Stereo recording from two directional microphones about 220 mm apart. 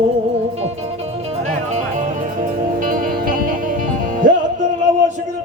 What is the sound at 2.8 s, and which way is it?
Music, 40° right (ahead or behind).